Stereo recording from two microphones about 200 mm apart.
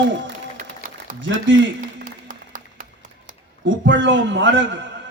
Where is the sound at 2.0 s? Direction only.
40° right (ahead or behind).